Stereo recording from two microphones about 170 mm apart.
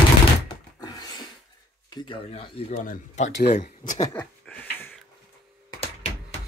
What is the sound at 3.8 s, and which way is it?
Speech, 25° left (ahead or behind).